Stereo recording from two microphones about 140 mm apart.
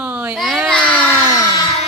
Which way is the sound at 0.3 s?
Centre (ahead or behind).